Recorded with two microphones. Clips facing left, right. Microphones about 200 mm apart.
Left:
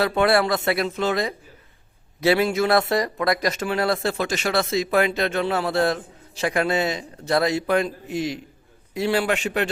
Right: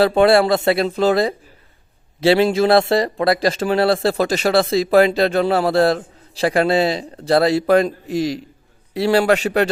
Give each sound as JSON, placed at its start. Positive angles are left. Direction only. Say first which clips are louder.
{"t": 0.0, "sound": "a man's voice", "louder": "right 6 dB", "side_deg": -30}